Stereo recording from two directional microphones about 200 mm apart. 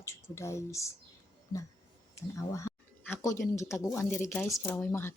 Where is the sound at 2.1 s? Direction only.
15° left (ahead or behind).